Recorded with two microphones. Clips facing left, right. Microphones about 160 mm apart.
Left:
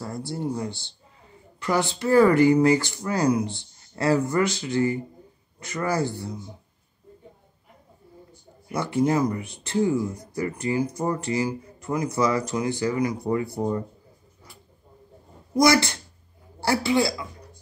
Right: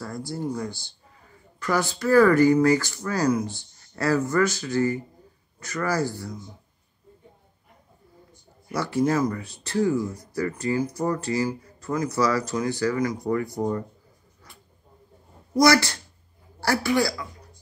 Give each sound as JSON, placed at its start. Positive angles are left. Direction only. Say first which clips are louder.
{"t": 0.0, "sound": "a man's voice", "louder": "left 1 dB", "side_deg": 25}
{"t": 8.7, "sound": "a man's voice", "louder": "left 1 dB", "side_deg": 20}
{"t": 15.6, "sound": "a man's voice", "louder": "even", "side_deg": 20}